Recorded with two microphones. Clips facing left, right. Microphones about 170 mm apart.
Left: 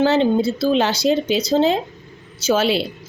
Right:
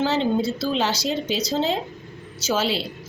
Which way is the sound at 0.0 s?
60° left (ahead or behind).